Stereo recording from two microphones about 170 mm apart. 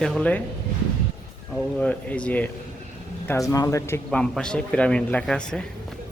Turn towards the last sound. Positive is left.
turn(degrees=5)  # may be behind; listen again after turning